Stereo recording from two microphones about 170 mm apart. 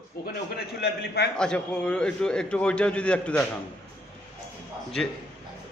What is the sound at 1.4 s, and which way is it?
A man's voice, 5° left (ahead or behind).